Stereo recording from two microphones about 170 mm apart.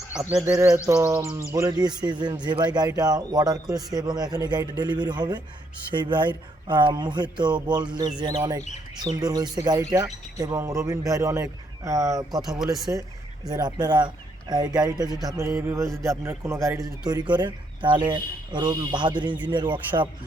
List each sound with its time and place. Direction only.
0.4 s a man's voice: 15° right (ahead or behind)
12.5 s speech: centre (ahead or behind)
13.5 s a man's voice: 25° right (ahead or behind)